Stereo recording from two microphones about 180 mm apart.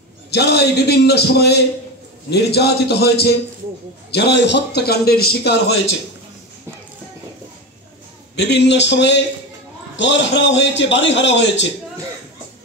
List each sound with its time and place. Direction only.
0.3 s a man's voice: 65° left (ahead or behind)
8.4 s a man's voice: 70° left (ahead or behind)
9.9 s a man's voice: 90° left